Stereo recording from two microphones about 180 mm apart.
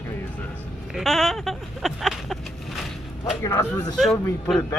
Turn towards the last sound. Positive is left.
turn(degrees=5)  # may be behind; listen again after turning